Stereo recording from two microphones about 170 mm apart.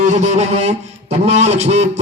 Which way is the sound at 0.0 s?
45° right (ahead or behind).